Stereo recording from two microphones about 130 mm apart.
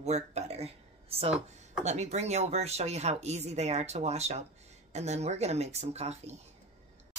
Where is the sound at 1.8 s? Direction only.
60° right (ahead or behind).